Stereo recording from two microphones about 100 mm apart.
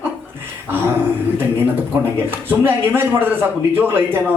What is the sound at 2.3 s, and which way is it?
Speech, 20° right (ahead or behind).